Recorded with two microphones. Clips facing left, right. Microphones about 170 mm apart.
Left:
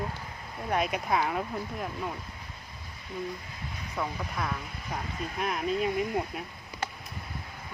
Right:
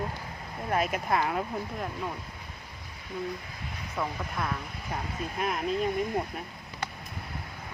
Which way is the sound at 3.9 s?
Centre (ahead or behind).